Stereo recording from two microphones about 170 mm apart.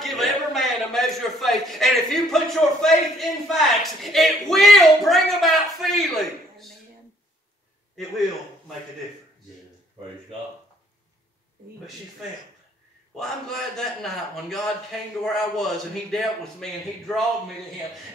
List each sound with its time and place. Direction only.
0.0 s a man's voice: centre (ahead or behind)
13.1 s a man's voice: centre (ahead or behind)